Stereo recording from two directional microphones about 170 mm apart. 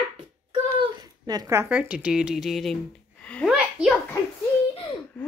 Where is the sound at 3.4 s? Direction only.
5° right (ahead or behind).